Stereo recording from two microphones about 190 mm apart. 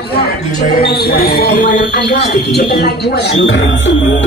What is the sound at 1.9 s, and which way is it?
Speech, 60° left (ahead or behind).